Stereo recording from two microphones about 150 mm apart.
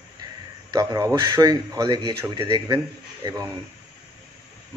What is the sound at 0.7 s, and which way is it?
Speech, 20° right (ahead or behind).